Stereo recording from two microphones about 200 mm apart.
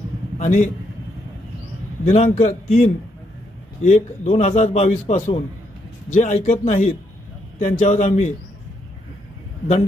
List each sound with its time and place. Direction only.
0.4 s a man's voice: 40° left (ahead or behind)
2.0 s a man's voice: 35° left (ahead or behind)